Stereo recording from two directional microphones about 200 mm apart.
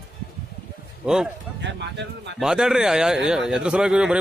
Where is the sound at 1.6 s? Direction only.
60° right (ahead or behind).